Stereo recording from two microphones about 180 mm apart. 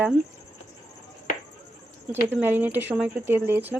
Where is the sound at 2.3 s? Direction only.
10° right (ahead or behind).